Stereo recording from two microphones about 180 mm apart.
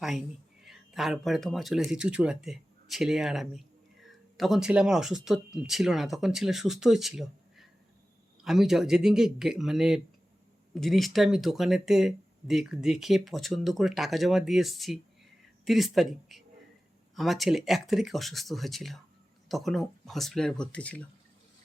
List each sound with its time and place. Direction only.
0.6 s speech: centre (ahead or behind)